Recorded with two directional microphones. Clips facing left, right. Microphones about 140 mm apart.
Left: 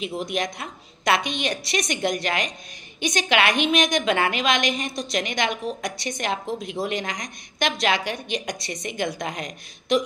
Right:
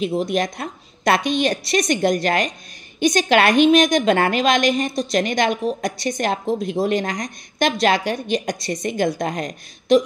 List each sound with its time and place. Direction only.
0.0 s a woman's voice: 40° right (ahead or behind)